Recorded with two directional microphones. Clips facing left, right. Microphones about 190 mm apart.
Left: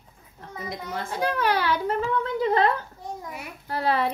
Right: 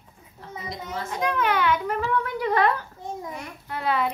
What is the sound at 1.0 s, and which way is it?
Child singing, 30° left (ahead or behind).